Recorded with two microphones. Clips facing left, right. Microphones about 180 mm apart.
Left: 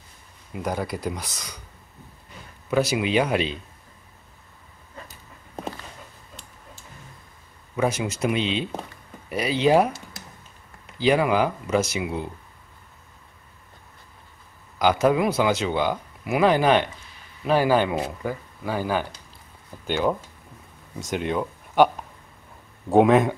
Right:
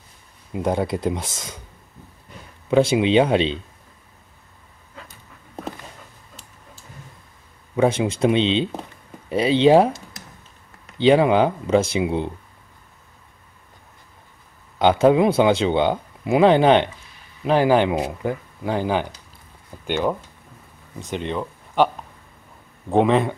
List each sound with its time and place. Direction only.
0.5 s speech: 25° right (ahead or behind)
2.7 s speech: 25° right (ahead or behind)
7.7 s speech: 25° right (ahead or behind)
11.0 s speech: 25° right (ahead or behind)
14.8 s speech: 25° right (ahead or behind)
19.9 s speech: centre (ahead or behind)
21.2 s speech: 5° left (ahead or behind)